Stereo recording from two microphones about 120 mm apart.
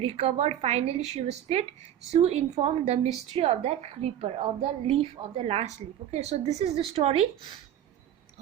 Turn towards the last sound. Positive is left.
turn(degrees=-60)  # may be behind; listen again after turning